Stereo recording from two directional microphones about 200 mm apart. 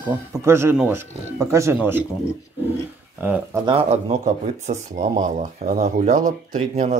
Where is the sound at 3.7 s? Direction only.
30° right (ahead or behind).